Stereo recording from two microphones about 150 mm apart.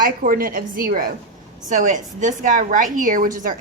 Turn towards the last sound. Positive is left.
turn(degrees=-65)  # may be behind; listen again after turning